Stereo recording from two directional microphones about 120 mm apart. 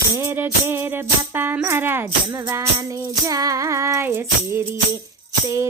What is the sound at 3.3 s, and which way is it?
Music, 30° right (ahead or behind).